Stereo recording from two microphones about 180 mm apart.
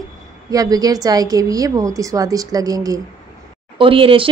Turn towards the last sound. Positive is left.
turn(degrees=-30)  # may be behind; listen again after turning